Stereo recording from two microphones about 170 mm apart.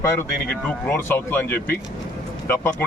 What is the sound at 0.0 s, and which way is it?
Speech, 10° left (ahead or behind).